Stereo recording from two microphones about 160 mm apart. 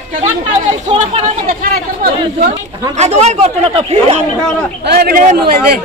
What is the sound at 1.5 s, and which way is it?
Speech, 65° right (ahead or behind).